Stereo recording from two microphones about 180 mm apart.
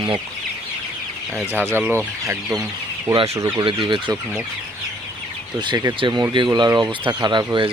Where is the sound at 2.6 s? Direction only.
20° right (ahead or behind).